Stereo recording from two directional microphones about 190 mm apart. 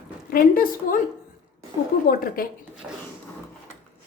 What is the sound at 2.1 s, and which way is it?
Speech, 50° left (ahead or behind).